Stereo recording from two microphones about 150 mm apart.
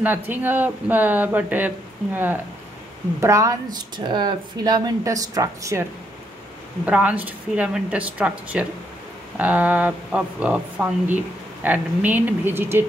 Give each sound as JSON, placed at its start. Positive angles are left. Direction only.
{"t": 0.0, "sound": "speech", "side_deg": -10}
{"t": 3.2, "sound": "speech", "side_deg": -20}
{"t": 6.9, "sound": "speech", "side_deg": -10}